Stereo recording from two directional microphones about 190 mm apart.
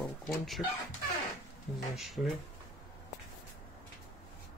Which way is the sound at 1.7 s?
Centre (ahead or behind).